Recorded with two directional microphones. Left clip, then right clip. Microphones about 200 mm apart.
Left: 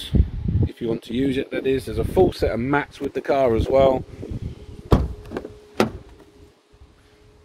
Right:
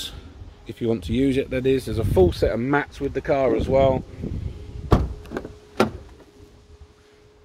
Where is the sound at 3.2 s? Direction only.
30° left (ahead or behind).